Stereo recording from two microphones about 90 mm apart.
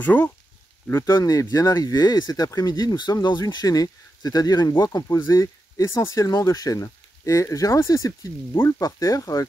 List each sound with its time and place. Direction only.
0.0 s speech: 20° left (ahead or behind)
1.0 s speech: 45° left (ahead or behind)
5.0 s speech: 30° left (ahead or behind)